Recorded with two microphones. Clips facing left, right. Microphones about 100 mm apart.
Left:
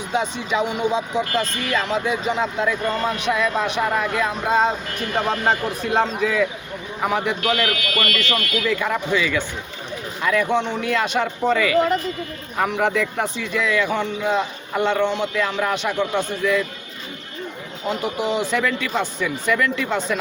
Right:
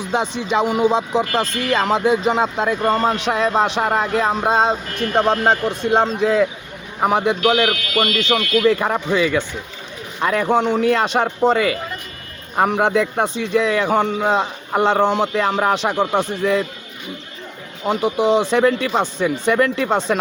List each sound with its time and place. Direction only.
0.4 s speech: 35° right (ahead or behind)
17.8 s speech: 30° right (ahead or behind)